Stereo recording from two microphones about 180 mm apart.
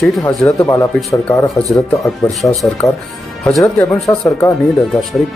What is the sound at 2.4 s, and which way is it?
Speech, centre (ahead or behind).